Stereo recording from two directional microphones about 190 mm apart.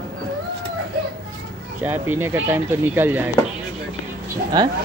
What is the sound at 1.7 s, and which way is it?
Speech, 10° right (ahead or behind).